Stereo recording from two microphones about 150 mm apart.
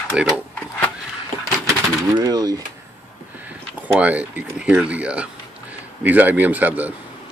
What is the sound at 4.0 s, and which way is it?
Speech, 10° right (ahead or behind).